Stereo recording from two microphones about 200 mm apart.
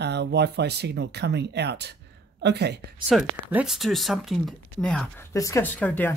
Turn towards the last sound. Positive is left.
turn(degrees=5)  # may be behind; listen again after turning